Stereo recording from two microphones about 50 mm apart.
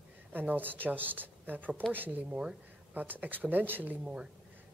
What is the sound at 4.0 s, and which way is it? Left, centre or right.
Speech, right.